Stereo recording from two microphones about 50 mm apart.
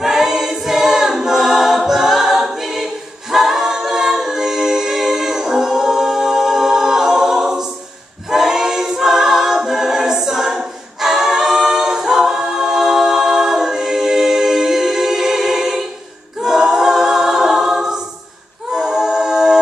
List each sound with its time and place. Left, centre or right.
0.0 s choir: centre
16.4 s a capella: centre